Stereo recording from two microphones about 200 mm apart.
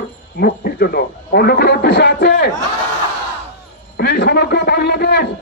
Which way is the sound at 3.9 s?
55° left (ahead or behind).